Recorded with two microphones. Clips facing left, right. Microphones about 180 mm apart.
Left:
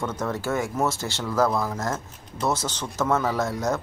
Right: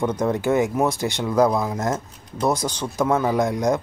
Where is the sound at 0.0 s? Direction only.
15° right (ahead or behind).